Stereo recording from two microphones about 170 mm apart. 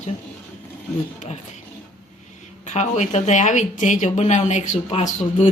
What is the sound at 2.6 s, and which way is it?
Speech, 45° left (ahead or behind).